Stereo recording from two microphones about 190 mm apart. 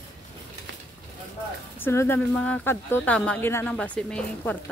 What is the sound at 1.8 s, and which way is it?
Speech, 15° left (ahead or behind).